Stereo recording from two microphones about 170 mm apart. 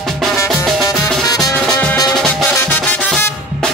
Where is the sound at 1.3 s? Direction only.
20° left (ahead or behind).